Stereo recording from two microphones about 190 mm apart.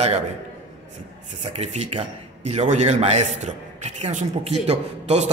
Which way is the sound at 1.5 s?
35° right (ahead or behind).